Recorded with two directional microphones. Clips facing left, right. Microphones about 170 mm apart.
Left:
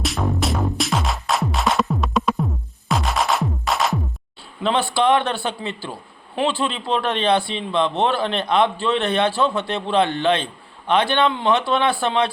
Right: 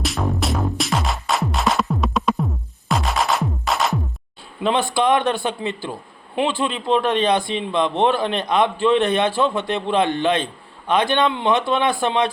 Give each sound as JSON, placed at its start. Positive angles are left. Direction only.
{"t": 0.0, "sound": "music", "side_deg": 0}
{"t": 4.9, "sound": "a man's voice", "side_deg": -15}